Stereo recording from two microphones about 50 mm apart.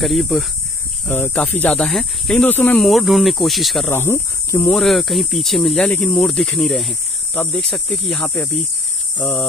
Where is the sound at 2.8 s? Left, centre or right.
Centre.